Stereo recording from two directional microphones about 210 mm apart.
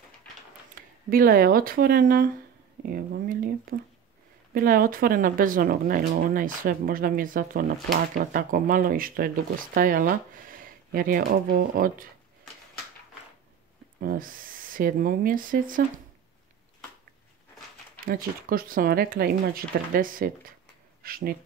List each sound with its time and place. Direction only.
0.7 s speech: 40° right (ahead or behind)
14.0 s speech: 40° right (ahead or behind)
18.0 s speech: 45° right (ahead or behind)